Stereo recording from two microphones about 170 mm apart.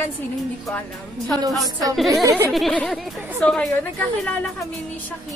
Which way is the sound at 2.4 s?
Centre (ahead or behind).